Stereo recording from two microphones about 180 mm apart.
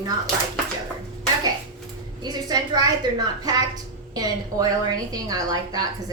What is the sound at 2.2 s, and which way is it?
A woman's voice, 20° right (ahead or behind).